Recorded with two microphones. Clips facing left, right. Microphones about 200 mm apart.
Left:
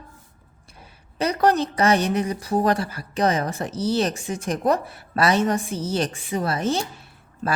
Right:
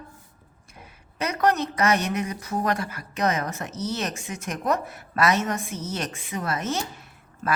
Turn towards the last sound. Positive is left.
turn(degrees=30)  # may be behind; listen again after turning